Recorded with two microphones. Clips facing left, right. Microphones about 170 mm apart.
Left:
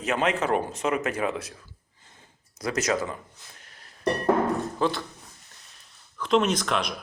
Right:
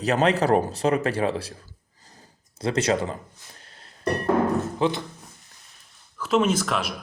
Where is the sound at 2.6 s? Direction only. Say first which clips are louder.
Right 3 dB; 30° right (ahead or behind).